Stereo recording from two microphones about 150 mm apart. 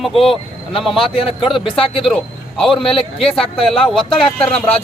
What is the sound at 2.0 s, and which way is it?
Speech, 5° left (ahead or behind).